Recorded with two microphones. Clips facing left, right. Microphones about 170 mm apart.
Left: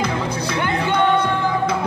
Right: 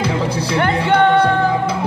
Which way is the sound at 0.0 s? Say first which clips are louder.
Right 3 dB; 35° right (ahead or behind).